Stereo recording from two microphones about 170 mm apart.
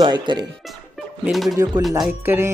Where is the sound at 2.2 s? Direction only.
15° right (ahead or behind).